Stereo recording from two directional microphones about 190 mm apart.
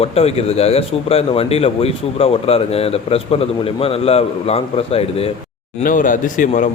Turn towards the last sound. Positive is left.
turn(degrees=45)  # may be behind; listen again after turning